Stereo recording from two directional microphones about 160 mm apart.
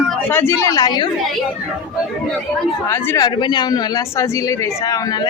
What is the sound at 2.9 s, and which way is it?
Speech, 20° left (ahead or behind).